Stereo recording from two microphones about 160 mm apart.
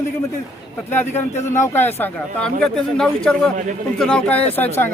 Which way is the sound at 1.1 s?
45° left (ahead or behind).